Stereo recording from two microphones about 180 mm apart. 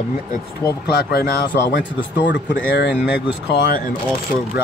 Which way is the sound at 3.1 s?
70° left (ahead or behind).